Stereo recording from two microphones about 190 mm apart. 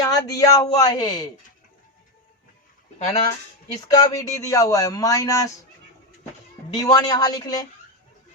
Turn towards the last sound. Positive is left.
turn(degrees=20)  # may be behind; listen again after turning